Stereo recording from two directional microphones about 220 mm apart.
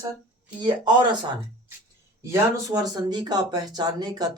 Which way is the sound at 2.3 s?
15° right (ahead or behind).